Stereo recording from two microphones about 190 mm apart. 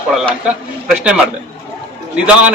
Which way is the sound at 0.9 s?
5° right (ahead or behind).